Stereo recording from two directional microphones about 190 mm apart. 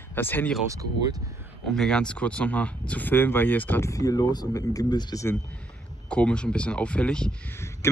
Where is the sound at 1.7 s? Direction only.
5° left (ahead or behind); by 5.3 s 20° left (ahead or behind).